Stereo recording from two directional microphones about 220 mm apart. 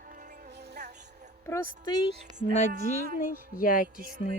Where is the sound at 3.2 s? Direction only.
40° left (ahead or behind).